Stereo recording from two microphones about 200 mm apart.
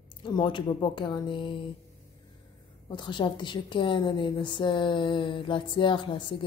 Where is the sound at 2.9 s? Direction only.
25° left (ahead or behind).